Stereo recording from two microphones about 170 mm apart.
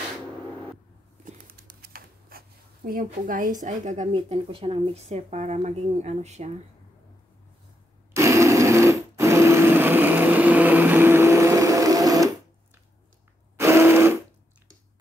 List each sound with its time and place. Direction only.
1.2 s bird: 60° right (ahead or behind)
2.9 s speech: 55° right (ahead or behind)
8.1 s sewing machine: 15° right (ahead or behind)
13.6 s a sound: 15° right (ahead or behind)